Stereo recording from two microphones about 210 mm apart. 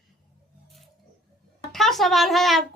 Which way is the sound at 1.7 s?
Centre (ahead or behind).